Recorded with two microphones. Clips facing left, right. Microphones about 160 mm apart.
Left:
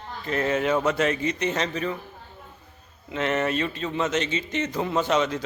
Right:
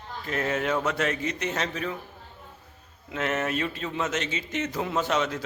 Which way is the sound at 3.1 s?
5° right (ahead or behind).